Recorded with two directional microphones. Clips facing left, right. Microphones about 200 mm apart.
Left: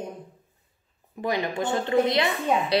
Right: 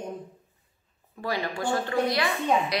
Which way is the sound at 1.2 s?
20° left (ahead or behind).